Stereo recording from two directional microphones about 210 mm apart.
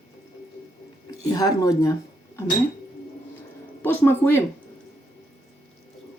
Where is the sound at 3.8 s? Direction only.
10° left (ahead or behind).